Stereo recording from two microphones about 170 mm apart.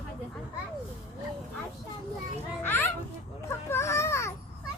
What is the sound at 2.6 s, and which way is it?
A woman's voice, 10° left (ahead or behind).